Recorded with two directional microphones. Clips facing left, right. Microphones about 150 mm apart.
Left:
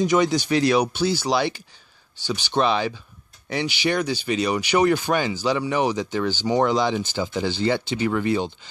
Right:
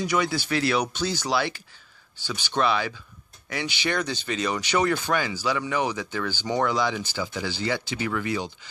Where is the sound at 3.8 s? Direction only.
10° left (ahead or behind).